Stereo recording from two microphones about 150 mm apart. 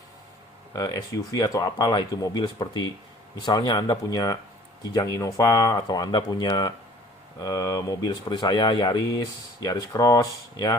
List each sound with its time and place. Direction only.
0.7 s speech: 25° left (ahead or behind)